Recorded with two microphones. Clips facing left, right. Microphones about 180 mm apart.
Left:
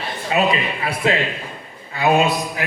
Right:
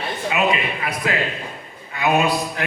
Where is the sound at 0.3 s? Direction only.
35° left (ahead or behind).